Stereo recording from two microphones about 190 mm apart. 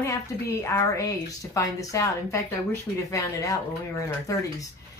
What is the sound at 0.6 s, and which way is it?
A woman's voice, 15° left (ahead or behind).